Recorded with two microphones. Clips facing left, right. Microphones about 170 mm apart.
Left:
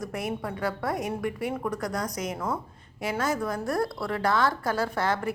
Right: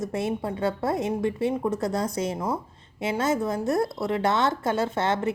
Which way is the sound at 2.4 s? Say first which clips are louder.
Right 2 dB; 25° right (ahead or behind).